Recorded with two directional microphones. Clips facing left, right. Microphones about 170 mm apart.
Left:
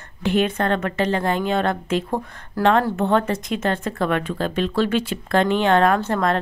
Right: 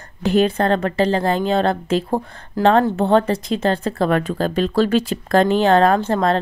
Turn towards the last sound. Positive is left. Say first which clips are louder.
# right 3 dB
turn(degrees=-30)  # may be behind; listen again after turning